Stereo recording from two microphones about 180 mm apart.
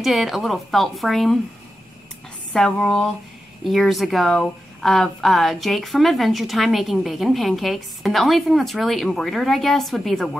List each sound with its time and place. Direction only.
0.0 s speech: centre (ahead or behind)
2.5 s speech: 5° left (ahead or behind)